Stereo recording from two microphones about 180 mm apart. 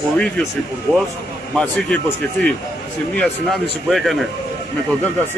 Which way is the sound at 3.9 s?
Centre (ahead or behind).